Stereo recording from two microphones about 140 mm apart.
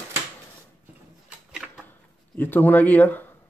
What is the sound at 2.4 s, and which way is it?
Speech, 15° left (ahead or behind).